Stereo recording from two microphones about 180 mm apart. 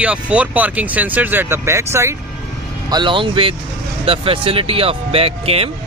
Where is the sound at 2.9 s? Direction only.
25° right (ahead or behind).